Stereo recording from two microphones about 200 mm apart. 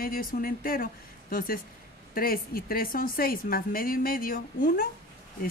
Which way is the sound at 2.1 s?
45° left (ahead or behind).